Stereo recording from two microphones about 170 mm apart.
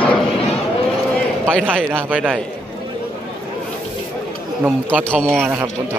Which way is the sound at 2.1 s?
10° right (ahead or behind).